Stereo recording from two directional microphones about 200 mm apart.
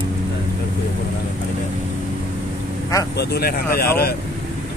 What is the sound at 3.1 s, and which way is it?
Speech, 50° left (ahead or behind).